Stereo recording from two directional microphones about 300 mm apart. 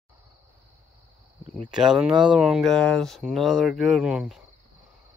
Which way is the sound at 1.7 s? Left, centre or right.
Centre.